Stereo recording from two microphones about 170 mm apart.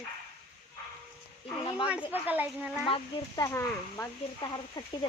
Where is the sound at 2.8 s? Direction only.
30° left (ahead or behind).